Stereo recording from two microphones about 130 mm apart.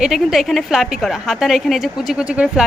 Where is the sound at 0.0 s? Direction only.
5° right (ahead or behind).